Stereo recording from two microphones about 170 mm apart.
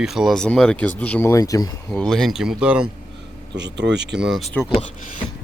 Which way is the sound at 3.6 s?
90° right.